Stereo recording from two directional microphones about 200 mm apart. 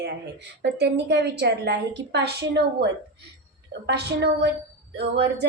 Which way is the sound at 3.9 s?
55° right (ahead or behind).